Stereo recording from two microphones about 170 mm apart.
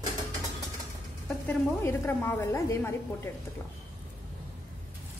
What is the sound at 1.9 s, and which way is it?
Speech, 15° left (ahead or behind).